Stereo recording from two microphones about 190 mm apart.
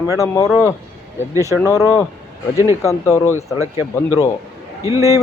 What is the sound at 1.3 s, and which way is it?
Speech, 15° right (ahead or behind).